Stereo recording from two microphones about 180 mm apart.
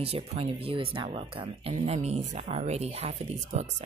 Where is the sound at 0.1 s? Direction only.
35° right (ahead or behind).